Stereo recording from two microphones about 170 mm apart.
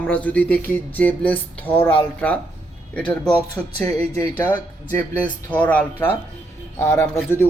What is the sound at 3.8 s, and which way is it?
Speech, 15° left (ahead or behind).